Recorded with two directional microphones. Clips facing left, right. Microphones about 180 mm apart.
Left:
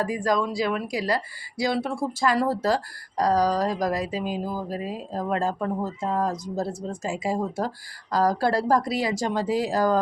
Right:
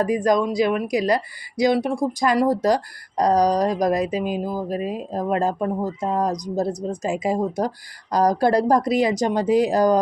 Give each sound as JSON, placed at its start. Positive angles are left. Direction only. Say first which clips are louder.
{"t": 0.0, "sound": "speech", "louder": "right 5 dB", "side_deg": -20}